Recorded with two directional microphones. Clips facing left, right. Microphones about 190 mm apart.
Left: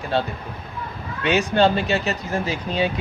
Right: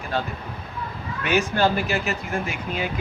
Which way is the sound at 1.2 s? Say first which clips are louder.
Left 3 dB; 20° left (ahead or behind).